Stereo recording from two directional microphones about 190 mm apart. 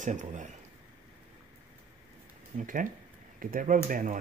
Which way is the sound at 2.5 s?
45° right (ahead or behind).